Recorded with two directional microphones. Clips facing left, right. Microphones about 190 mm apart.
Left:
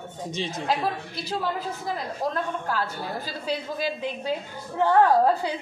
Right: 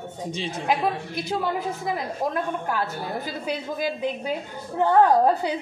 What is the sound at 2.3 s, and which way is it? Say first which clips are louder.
A woman's voice: right 2 dB; 20° right (ahead or behind).